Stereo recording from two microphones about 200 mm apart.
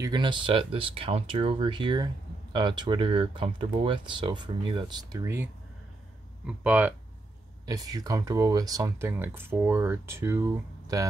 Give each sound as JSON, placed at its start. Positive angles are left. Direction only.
{"t": 0.0, "sound": "speech", "side_deg": -25}
{"t": 7.6, "sound": "speech", "side_deg": -15}